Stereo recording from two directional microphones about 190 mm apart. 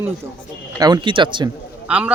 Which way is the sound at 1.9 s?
5° right (ahead or behind).